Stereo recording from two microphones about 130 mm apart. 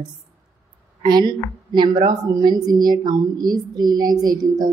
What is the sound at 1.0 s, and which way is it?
A woman's voice, 35° right (ahead or behind).